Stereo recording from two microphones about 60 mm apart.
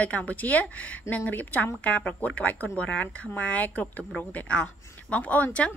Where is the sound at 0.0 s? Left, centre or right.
Left.